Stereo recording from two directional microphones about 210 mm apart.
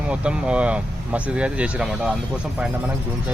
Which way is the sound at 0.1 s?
5° right (ahead or behind).